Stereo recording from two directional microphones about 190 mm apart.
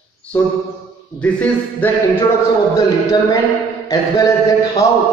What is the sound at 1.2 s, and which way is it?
Speech, 5° left (ahead or behind).